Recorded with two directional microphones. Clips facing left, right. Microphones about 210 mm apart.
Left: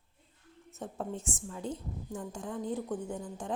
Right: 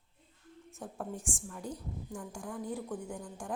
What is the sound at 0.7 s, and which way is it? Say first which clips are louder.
A woman's voice: left 3 dB; 20° left (ahead or behind).